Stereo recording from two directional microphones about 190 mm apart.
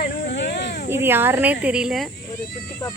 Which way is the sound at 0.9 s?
10° right (ahead or behind).